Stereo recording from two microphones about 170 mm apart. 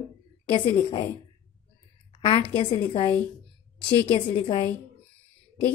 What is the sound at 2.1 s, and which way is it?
A woman's voice, 30° left (ahead or behind).